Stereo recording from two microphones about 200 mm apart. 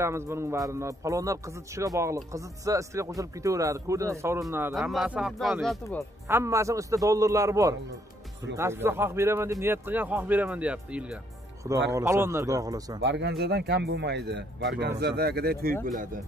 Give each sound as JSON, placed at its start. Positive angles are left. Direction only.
{"t": 0.0, "sound": "a man's voice", "side_deg": -15}
{"t": 4.7, "sound": "speech", "side_deg": 0}
{"t": 6.2, "sound": "a man's voice", "side_deg": -15}
{"t": 13.0, "sound": "speech", "side_deg": -60}